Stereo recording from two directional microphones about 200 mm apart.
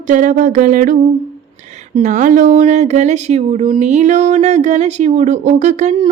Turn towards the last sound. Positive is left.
turn(degrees=-35)  # may be behind; listen again after turning